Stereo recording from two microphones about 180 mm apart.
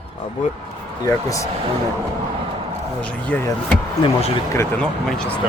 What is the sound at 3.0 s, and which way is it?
Speech, 5° left (ahead or behind).